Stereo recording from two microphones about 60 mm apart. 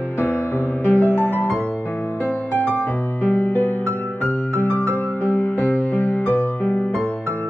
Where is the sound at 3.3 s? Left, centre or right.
Left.